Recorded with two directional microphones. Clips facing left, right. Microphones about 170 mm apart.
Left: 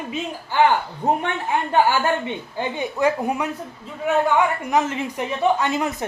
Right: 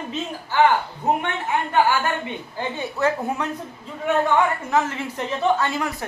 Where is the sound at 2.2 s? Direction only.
20° left (ahead or behind).